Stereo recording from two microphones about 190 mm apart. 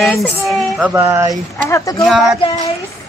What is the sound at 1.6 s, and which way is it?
Speech, 15° left (ahead or behind).